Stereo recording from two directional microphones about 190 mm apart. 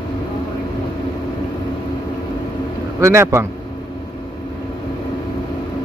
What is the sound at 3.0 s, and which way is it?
Speech, 15° right (ahead or behind).